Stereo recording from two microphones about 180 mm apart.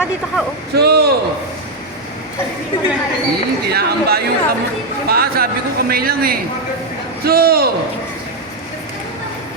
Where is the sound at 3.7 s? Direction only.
60° right (ahead or behind).